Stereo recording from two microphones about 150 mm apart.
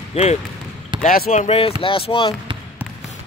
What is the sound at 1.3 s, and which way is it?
Speech, 45° left (ahead or behind).